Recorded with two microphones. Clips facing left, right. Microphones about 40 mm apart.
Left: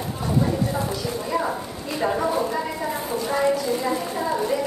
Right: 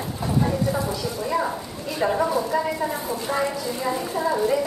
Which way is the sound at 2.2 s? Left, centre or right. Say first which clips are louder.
Right 1 dB; left.